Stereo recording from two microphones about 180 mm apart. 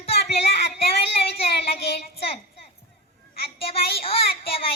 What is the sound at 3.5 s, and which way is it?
Child singing, 30° left (ahead or behind).